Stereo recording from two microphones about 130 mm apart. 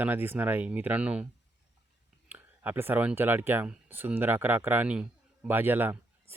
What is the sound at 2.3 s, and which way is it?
Speech, 15° right (ahead or behind).